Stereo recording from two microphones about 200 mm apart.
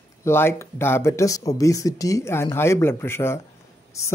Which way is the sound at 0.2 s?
10° left (ahead or behind).